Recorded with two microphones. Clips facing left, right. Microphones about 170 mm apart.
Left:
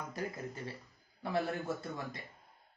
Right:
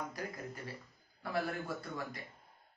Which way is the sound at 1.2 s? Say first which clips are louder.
Left 2 dB; 25° left (ahead or behind).